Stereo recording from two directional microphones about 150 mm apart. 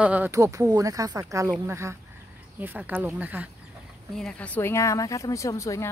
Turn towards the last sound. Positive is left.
turn(degrees=20)  # may be behind; listen again after turning